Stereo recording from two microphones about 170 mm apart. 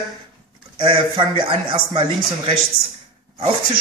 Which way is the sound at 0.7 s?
30° right (ahead or behind).